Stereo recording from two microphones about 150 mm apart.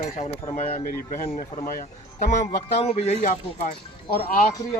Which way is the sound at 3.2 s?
55° left (ahead or behind).